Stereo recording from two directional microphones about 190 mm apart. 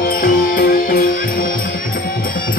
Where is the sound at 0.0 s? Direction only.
50° left (ahead or behind).